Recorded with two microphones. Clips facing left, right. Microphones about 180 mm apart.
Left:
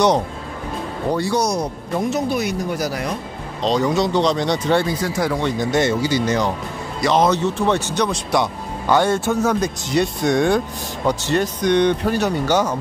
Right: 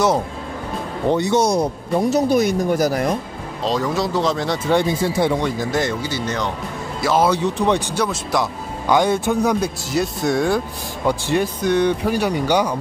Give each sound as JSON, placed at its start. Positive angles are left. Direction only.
{"t": 1.1, "sound": "speech", "side_deg": -20}
{"t": 3.6, "sound": "speech", "side_deg": 0}
{"t": 4.7, "sound": "speech", "side_deg": -25}
{"t": 5.4, "sound": "speech", "side_deg": 0}
{"t": 6.0, "sound": "speech", "side_deg": 10}
{"t": 7.0, "sound": "speech", "side_deg": -5}
{"t": 8.8, "sound": "speech", "side_deg": -10}